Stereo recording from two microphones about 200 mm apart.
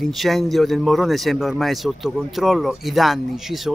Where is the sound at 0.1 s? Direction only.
Centre (ahead or behind).